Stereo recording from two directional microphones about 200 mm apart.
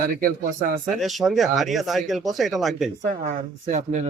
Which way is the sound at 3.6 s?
35° right (ahead or behind).